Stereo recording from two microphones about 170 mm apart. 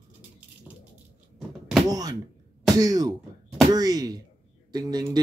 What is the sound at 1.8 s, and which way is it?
Speech, 20° right (ahead or behind).